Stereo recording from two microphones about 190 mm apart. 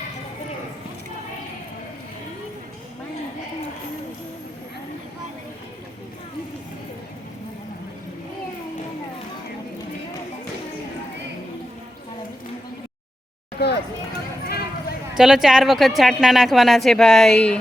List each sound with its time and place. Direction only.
13.6 s hubbub: 60° left (ahead or behind)
14.4 s clip-clop: 55° left (ahead or behind)
15.2 s speech: centre (ahead or behind)